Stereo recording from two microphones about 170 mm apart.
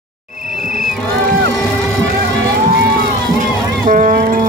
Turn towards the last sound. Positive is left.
turn(degrees=-55)  # may be behind; listen again after turning